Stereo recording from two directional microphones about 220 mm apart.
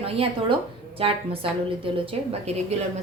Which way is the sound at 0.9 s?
25° right (ahead or behind).